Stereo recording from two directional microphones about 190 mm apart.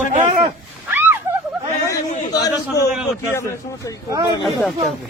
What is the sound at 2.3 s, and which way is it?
Speech, 20° left (ahead or behind).